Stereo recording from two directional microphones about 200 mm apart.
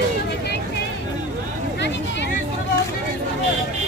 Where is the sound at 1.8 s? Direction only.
60° left (ahead or behind).